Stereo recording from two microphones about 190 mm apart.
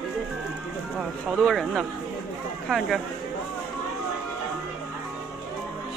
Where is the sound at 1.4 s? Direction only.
Centre (ahead or behind).